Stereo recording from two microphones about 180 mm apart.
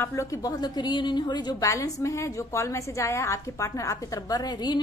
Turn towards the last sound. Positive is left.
turn(degrees=25)  # may be behind; listen again after turning